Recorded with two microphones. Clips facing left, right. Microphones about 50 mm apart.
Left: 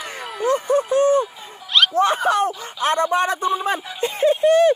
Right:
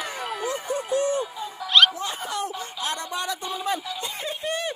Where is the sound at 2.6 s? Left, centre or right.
Left.